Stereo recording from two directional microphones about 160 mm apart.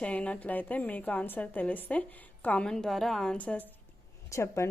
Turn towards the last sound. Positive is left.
turn(degrees=20)  # may be behind; listen again after turning